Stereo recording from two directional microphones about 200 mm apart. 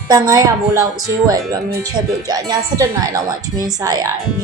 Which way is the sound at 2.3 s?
20° right (ahead or behind).